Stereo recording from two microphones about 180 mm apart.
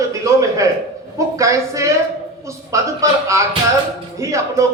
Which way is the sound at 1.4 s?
15° right (ahead or behind).